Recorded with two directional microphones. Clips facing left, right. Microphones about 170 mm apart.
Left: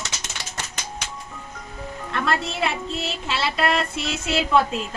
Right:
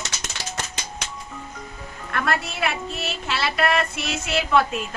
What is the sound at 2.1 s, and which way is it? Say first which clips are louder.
A woman's voice: even; 25° left (ahead or behind).